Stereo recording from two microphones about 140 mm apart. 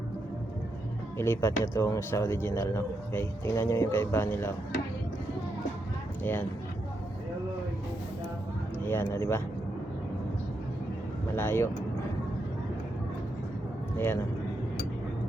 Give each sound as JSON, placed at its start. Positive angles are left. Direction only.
{"t": 1.2, "sound": "speech", "side_deg": 20}
{"t": 8.8, "sound": "speech", "side_deg": 15}
{"t": 11.3, "sound": "speech", "side_deg": 15}
{"t": 13.9, "sound": "speech", "side_deg": 15}